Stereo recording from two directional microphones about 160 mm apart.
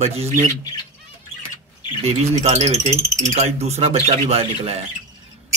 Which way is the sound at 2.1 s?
40° right (ahead or behind).